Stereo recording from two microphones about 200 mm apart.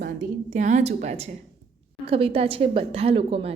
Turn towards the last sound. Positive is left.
turn(degrees=-30)  # may be behind; listen again after turning